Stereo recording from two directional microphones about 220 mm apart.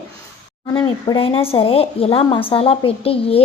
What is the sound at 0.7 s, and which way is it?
A woman's voice, 20° left (ahead or behind).